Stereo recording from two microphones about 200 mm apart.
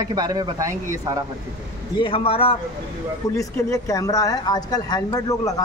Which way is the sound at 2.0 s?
25° left (ahead or behind).